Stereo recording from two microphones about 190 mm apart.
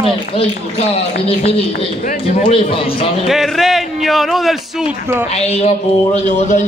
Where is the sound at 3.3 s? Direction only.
Centre (ahead or behind).